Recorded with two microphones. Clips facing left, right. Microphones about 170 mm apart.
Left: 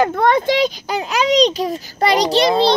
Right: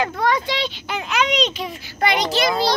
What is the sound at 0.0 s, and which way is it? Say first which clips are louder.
A child's voice: left 6 dB; 50° left (ahead or behind).